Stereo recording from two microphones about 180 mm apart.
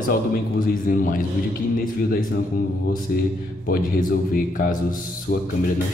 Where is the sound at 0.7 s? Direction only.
50° left (ahead or behind).